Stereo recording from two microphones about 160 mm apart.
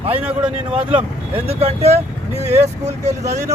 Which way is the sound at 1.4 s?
40° right (ahead or behind).